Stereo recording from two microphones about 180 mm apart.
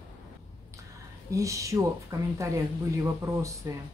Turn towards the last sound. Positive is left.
turn(degrees=-15)  # may be behind; listen again after turning